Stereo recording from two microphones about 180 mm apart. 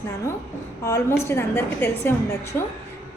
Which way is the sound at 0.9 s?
15° left (ahead or behind).